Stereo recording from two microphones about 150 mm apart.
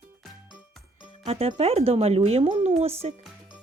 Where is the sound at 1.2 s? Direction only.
40° right (ahead or behind).